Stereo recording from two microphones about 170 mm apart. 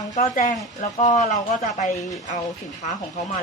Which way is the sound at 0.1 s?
50° left (ahead or behind).